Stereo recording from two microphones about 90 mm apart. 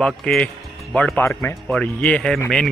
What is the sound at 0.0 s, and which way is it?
Speech, 10° left (ahead or behind).